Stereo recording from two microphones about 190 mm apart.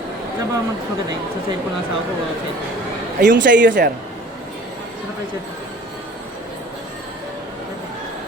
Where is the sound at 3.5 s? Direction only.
70° right (ahead or behind).